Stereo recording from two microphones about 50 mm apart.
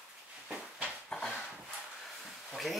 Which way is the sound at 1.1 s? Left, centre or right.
Centre.